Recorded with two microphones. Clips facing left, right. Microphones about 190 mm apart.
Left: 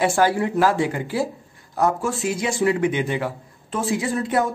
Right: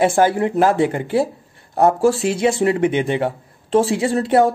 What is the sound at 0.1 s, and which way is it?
A woman's voice, 25° right (ahead or behind).